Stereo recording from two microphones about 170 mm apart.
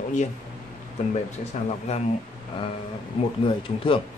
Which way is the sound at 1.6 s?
45° left (ahead or behind).